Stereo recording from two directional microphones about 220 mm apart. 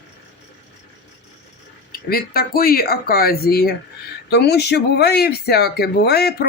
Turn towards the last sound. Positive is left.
turn(degrees=45)  # may be behind; listen again after turning